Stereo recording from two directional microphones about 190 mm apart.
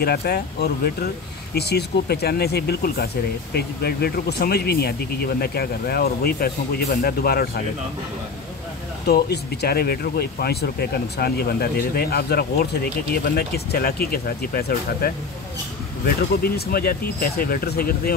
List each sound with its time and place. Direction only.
0.0 s speech: 55° left (ahead or behind)
9.0 s speech: 55° left (ahead or behind)
16.4 s speech: 50° left (ahead or behind)